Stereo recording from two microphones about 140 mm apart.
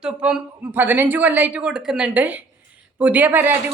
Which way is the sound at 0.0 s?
5° right (ahead or behind).